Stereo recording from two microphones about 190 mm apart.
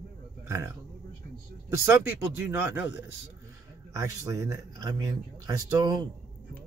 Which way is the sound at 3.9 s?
15° right (ahead or behind).